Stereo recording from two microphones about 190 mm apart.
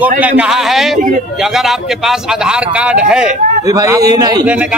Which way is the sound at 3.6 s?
15° right (ahead or behind).